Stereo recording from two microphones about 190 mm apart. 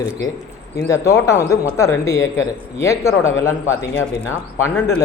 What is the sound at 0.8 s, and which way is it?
Speech, 15° left (ahead or behind).